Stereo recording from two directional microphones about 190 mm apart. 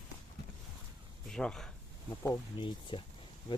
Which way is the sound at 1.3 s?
5° left (ahead or behind).